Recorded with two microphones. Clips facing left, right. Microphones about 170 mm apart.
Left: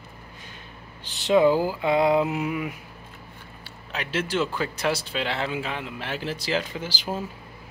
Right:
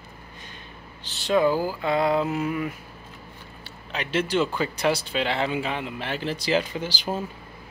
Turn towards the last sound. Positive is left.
turn(degrees=5)  # may be behind; listen again after turning